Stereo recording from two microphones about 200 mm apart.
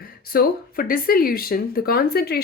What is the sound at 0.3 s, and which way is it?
Speech, 45° left (ahead or behind).